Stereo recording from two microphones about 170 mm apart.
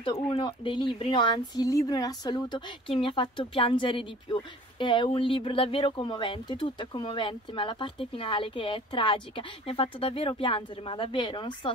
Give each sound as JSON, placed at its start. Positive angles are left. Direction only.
{"t": 0.0, "sound": "speech", "side_deg": 30}